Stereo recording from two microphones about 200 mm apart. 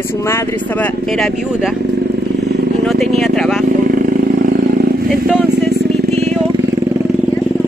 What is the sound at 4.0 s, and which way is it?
Vehicle, 45° right (ahead or behind).